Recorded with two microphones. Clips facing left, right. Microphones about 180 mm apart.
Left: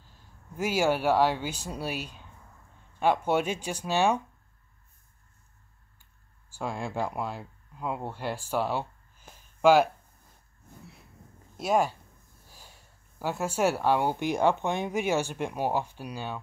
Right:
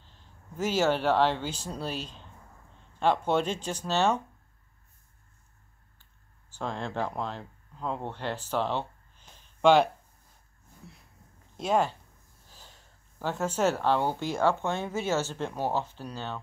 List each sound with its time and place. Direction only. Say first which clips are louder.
0.0 s speech: even; 10° left (ahead or behind)
6.5 s speech: left 1 dB; 10° left (ahead or behind)
11.5 s speech: left 1 dB; 10° left (ahead or behind)